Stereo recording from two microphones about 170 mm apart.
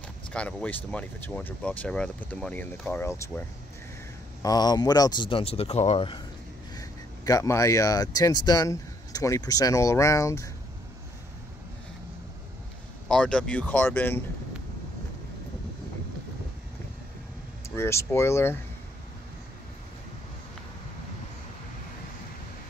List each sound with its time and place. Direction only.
0.3 s speech: 5° left (ahead or behind); by 6.2 s 30° left (ahead or behind)
6.7 s speech: 20° left (ahead or behind)
13.1 s speech: 5° left (ahead or behind)
17.6 s speech: 15° left (ahead or behind)